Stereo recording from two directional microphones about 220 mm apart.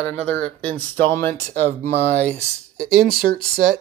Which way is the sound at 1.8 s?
30° right (ahead or behind).